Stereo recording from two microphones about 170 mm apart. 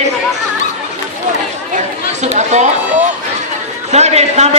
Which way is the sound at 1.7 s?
40° right (ahead or behind).